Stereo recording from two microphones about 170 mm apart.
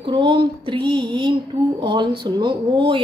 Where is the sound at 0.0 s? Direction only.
30° right (ahead or behind).